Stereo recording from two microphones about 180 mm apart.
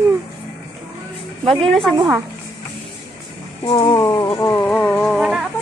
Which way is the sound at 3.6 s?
25° left (ahead or behind).